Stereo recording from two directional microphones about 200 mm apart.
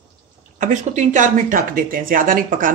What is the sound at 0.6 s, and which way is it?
Speech, 40° right (ahead or behind).